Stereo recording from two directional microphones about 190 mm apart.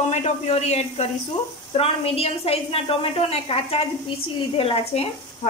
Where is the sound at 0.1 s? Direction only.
35° left (ahead or behind).